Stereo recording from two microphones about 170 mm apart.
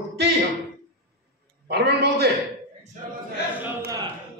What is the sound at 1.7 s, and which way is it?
Speech, 70° right (ahead or behind).